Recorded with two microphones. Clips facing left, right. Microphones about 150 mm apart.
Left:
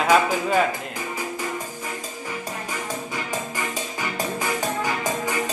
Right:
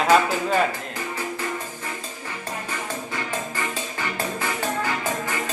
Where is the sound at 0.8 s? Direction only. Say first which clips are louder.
Even; 10° left (ahead or behind).